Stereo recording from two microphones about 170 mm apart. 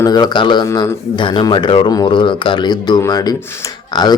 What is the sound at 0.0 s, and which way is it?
A man's voice, 25° left (ahead or behind).